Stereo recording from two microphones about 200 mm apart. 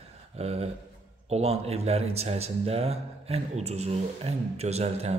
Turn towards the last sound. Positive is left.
turn(degrees=-30)  # may be behind; listen again after turning